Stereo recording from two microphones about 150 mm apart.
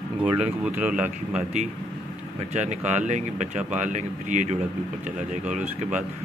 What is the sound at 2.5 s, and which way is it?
Speech, 50° right (ahead or behind).